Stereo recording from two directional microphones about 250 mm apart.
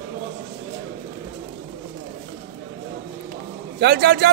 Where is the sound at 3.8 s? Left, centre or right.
Right.